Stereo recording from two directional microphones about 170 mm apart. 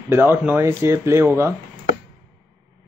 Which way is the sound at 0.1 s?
10° right (ahead or behind).